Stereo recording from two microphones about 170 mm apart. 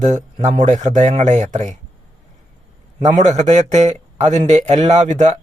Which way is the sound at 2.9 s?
45° right (ahead or behind).